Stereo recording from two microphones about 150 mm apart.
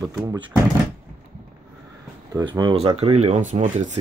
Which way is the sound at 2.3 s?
30° right (ahead or behind).